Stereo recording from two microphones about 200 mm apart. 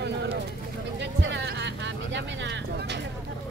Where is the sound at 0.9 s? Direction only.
60° right (ahead or behind).